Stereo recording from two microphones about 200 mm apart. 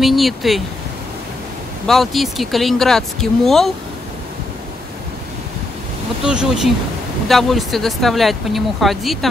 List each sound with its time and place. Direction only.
0.0 s speech: centre (ahead or behind)
1.9 s speech: centre (ahead or behind)
6.2 s speech: 5° right (ahead or behind)